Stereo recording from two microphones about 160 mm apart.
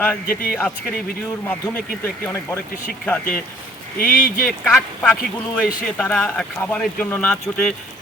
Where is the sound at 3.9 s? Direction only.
60° left (ahead or behind).